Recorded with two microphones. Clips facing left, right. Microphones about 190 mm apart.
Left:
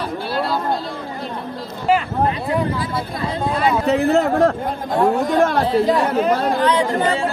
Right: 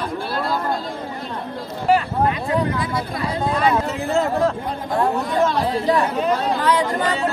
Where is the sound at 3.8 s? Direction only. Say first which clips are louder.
Left 5 dB; 65° left (ahead or behind).